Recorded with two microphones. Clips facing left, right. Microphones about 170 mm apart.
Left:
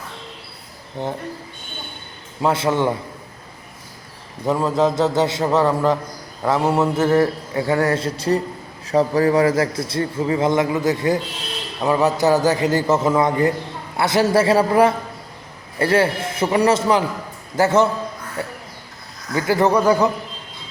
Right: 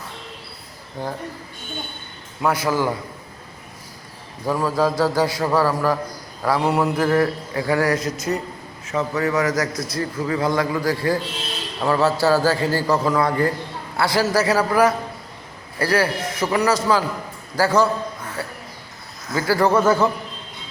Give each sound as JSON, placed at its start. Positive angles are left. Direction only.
{"t": 1.0, "sound": "a man's voice", "side_deg": 20}
{"t": 2.4, "sound": "a man's voice", "side_deg": 25}
{"t": 4.4, "sound": "a man's voice", "side_deg": 25}